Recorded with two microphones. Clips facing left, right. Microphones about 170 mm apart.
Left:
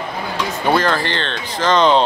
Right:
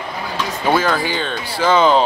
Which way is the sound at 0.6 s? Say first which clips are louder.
Even; 5° right (ahead or behind).